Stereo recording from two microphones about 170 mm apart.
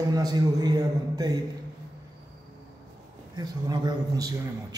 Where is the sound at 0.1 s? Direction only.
20° right (ahead or behind).